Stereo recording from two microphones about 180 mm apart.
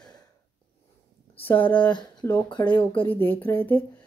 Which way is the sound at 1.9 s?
25° left (ahead or behind).